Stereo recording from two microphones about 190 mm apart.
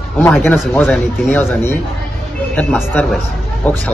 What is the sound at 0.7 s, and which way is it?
A man's voice, 10° left (ahead or behind).